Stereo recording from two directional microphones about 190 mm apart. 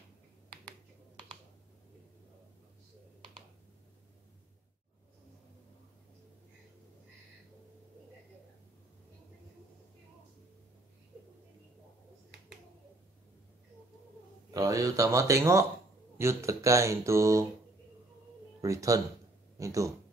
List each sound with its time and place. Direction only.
14.5 s speech: 15° right (ahead or behind)
18.6 s speech: 15° right (ahead or behind)